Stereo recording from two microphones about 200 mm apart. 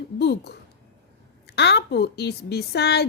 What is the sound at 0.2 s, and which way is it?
A woman's voice, 55° left (ahead or behind).